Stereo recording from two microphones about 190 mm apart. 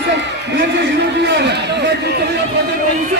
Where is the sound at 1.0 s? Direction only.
60° right (ahead or behind).